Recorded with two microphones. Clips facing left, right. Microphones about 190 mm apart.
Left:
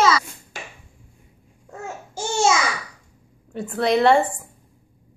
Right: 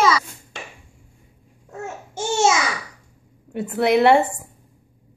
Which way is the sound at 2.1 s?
20° right (ahead or behind).